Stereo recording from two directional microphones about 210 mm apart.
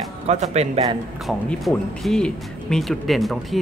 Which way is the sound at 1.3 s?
Centre (ahead or behind).